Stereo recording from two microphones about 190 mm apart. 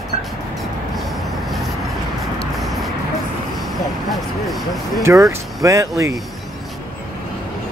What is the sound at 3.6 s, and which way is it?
Vehicle, centre (ahead or behind).